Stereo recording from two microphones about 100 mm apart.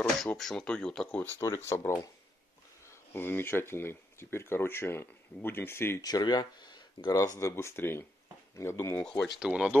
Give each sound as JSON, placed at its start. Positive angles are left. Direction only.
{"t": 0.4, "sound": "speech", "side_deg": 5}
{"t": 1.4, "sound": "speech", "side_deg": 30}
{"t": 5.9, "sound": "speech", "side_deg": 40}
{"t": 7.2, "sound": "speech", "side_deg": 30}
{"t": 8.9, "sound": "speech", "side_deg": 10}
{"t": 9.5, "sound": "speech", "side_deg": -15}